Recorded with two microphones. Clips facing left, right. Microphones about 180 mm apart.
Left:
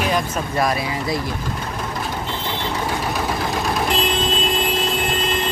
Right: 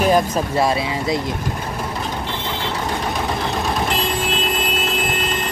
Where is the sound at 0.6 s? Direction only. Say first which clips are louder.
Even; 25° right (ahead or behind).